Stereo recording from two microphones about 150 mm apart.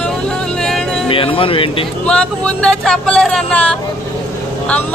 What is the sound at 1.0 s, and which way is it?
Speech, 35° left (ahead or behind).